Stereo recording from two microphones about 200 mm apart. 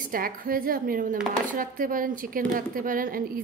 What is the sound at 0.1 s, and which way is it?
A woman's voice, 45° right (ahead or behind).